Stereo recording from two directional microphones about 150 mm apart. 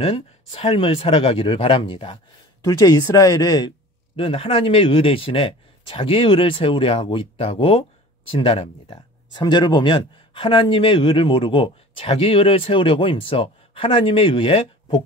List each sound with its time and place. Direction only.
0.0 s speech: 45° left (ahead or behind)
2.6 s speech: 25° left (ahead or behind)
4.2 s speech: 35° left (ahead or behind)